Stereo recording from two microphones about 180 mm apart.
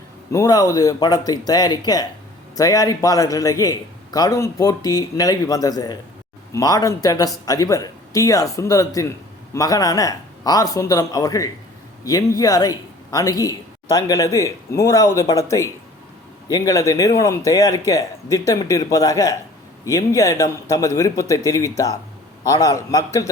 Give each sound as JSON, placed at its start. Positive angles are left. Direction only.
{"t": 0.3, "sound": "a man's voice", "side_deg": 20}